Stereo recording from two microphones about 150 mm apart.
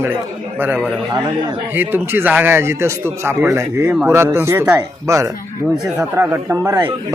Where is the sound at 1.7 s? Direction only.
15° right (ahead or behind).